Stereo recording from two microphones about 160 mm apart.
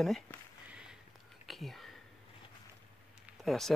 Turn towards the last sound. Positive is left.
turn(degrees=0)  # may be behind; listen again after turning